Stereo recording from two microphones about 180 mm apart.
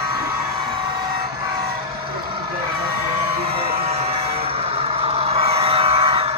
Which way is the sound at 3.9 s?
35° right (ahead or behind).